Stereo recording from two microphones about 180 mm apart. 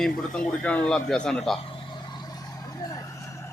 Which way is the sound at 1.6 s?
30° left (ahead or behind).